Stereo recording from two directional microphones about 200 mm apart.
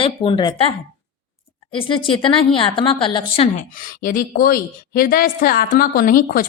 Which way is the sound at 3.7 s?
45° left (ahead or behind).